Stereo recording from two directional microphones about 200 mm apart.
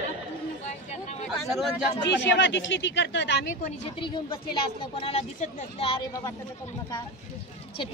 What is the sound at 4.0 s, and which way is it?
Speech, 25° left (ahead or behind).